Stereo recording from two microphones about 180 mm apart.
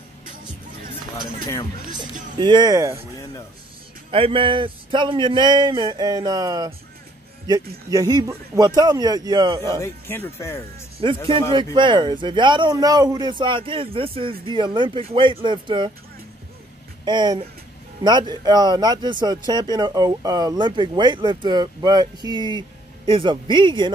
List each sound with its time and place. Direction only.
2.3 s speech: 25° right (ahead or behind)
4.1 s speech: 30° right (ahead or behind)
9.8 s speech: 15° left (ahead or behind)
11.0 s speech: 30° right (ahead or behind)
17.0 s speech: 25° right (ahead or behind)